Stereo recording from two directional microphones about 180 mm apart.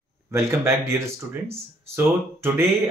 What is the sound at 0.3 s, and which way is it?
Speech, 15° right (ahead or behind).